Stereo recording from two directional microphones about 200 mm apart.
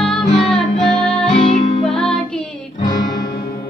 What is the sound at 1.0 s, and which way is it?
Music, 30° left (ahead or behind).